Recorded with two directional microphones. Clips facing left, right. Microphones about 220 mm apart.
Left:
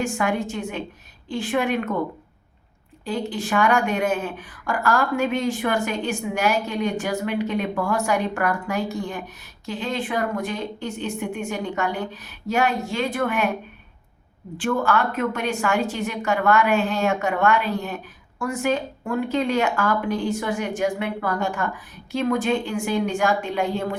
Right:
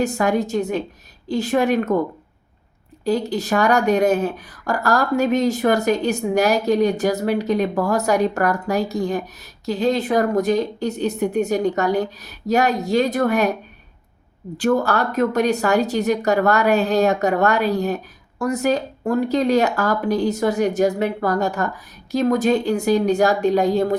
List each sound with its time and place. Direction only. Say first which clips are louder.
0.0 s speech: right 5 dB; 40° right (ahead or behind)
3.0 s speech: right 6 dB; 40° right (ahead or behind)
14.6 s speech: right 3 dB; 40° right (ahead or behind)